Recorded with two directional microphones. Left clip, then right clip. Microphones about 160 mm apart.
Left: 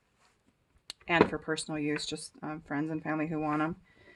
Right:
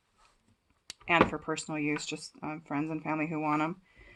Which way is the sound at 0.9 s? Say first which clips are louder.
Right 1 dB; 35° left (ahead or behind).